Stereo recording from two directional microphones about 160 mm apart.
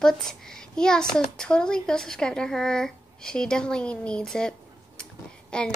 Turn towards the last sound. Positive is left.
turn(degrees=5)  # may be behind; listen again after turning